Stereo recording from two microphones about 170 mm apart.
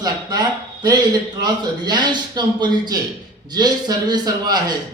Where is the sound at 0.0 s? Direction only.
25° right (ahead or behind).